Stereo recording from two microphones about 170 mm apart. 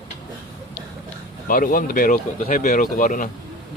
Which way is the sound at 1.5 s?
55° left (ahead or behind).